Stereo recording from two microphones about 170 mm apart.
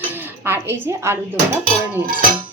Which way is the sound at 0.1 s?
10° right (ahead or behind).